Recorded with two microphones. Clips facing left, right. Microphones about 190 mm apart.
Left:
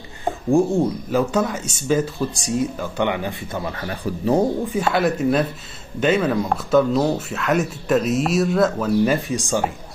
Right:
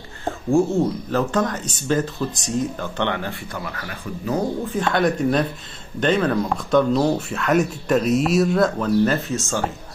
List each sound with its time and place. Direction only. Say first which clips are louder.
0.2 s speech: left 1 dB; 15° left (ahead or behind)
3.6 s speech: left 5 dB; 25° left (ahead or behind)
4.6 s speech: even; 10° left (ahead or behind)